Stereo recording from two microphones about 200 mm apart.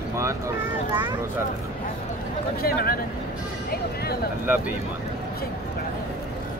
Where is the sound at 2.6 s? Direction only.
50° left (ahead or behind).